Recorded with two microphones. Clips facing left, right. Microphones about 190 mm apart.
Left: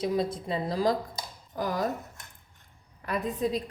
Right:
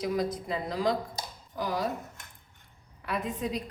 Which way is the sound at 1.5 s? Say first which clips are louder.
Left 2 dB; 50° left (ahead or behind).